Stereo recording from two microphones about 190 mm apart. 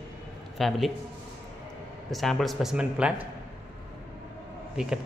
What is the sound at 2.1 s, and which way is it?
Speech, centre (ahead or behind).